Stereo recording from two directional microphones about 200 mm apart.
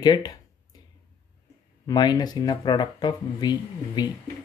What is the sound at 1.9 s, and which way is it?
Speech, 20° left (ahead or behind).